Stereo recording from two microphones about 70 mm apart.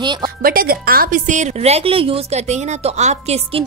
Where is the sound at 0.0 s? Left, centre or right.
Right.